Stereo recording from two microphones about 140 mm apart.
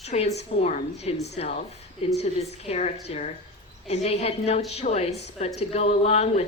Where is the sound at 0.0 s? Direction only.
50° left (ahead or behind).